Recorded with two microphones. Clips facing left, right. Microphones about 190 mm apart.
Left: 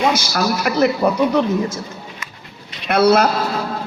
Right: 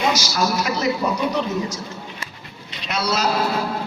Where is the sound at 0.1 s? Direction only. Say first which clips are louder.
Left 2 dB; 55° left (ahead or behind).